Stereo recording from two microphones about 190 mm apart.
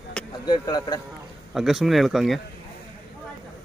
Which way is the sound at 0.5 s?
20° left (ahead or behind).